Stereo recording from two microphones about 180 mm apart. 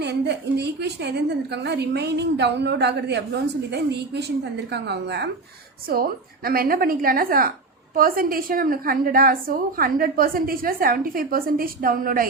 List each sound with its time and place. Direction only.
0.0 s a woman's voice: 70° right (ahead or behind)
5.9 s a woman's voice: 55° right (ahead or behind)